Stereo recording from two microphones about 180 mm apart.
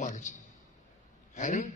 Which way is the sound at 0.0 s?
45° left (ahead or behind).